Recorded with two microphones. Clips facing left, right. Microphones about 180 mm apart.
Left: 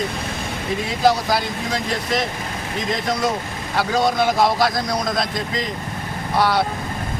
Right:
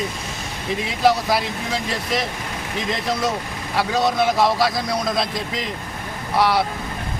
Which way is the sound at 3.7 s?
Centre (ahead or behind).